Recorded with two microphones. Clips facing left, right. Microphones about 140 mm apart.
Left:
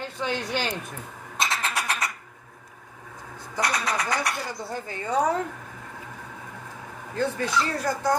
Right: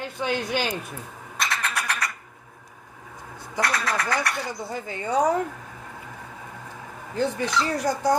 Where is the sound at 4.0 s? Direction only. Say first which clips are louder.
Right 1 dB; 20° left (ahead or behind).